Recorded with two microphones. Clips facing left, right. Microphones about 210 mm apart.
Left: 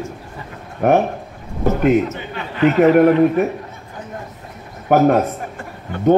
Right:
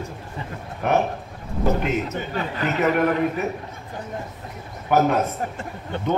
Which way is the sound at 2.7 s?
45° left (ahead or behind).